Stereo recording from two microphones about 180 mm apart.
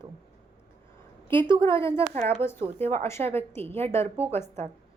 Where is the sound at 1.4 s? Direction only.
25° right (ahead or behind).